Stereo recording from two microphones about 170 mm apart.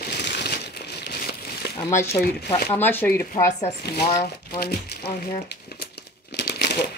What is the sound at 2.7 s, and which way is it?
Speech, 10° left (ahead or behind).